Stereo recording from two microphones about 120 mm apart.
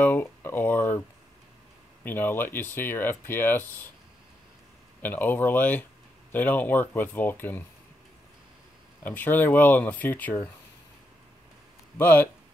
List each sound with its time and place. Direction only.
0.0 s a sound: 15° left (ahead or behind)
2.0 s speech: 15° left (ahead or behind)
5.0 s speech: 15° left (ahead or behind)
9.0 s speech: 15° left (ahead or behind)
12.0 s speech: 15° left (ahead or behind)